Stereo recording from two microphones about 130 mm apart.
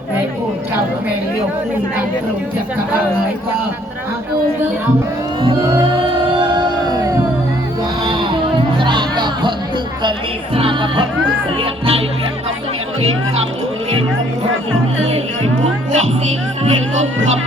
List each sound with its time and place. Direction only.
5.4 s speech: 40° right (ahead or behind)
5.8 s music: 40° right (ahead or behind)
10.0 s speech: 40° right (ahead or behind)